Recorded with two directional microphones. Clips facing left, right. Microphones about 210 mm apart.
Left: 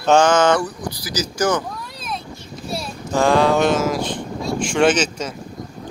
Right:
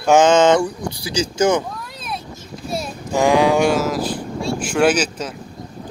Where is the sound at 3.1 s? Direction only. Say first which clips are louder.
Right 1 dB; 15° right (ahead or behind).